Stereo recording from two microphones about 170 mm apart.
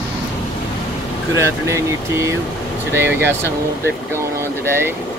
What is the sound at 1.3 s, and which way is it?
Speech, 15° right (ahead or behind).